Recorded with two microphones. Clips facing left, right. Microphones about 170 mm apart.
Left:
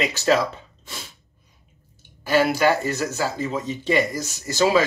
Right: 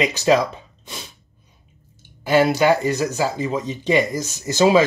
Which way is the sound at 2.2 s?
20° right (ahead or behind).